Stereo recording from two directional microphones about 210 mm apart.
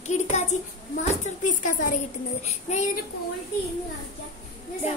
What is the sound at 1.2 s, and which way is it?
Speech, 35° left (ahead or behind).